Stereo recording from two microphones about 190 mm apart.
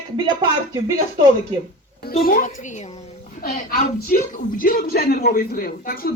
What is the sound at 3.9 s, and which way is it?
A man's voice, 50° left (ahead or behind).